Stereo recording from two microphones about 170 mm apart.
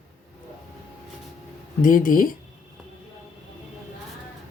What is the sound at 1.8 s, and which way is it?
Speech, 55° left (ahead or behind).